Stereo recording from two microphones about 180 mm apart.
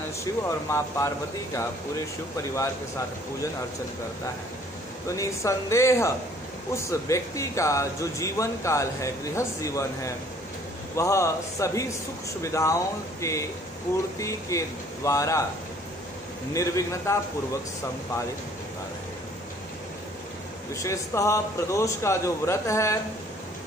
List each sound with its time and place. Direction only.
0.2 s speech: 15° left (ahead or behind)
5.1 s speech: 15° left (ahead or behind)
14.5 s speech: 15° left (ahead or behind)
16.5 s speech: 15° left (ahead or behind)
20.7 s speech: 15° left (ahead or behind)